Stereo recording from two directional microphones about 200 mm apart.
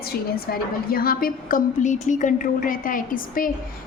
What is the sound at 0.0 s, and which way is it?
A woman's voice, 50° left (ahead or behind).